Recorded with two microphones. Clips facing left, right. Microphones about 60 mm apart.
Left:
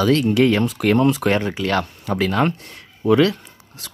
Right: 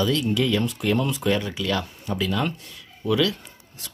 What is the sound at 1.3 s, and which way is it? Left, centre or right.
Speech, left.